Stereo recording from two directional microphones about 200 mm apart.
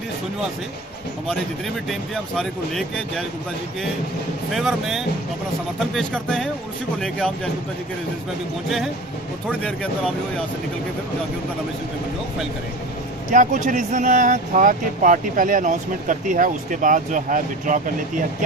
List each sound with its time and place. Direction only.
1.9 s speech: centre (ahead or behind)
4.5 s speech: centre (ahead or behind)
9.5 s speech: 5° left (ahead or behind)
13.3 s speech: 40° right (ahead or behind)